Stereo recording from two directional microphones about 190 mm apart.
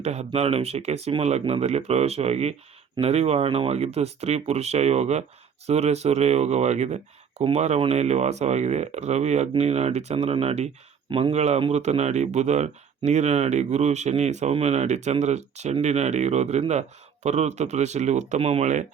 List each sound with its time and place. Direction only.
0.0 s speech: 35° right (ahead or behind)